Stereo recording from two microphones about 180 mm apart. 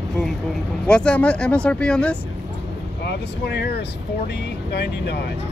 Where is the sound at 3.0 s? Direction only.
65° left (ahead or behind).